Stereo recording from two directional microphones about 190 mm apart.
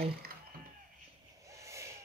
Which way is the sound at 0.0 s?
55° right (ahead or behind).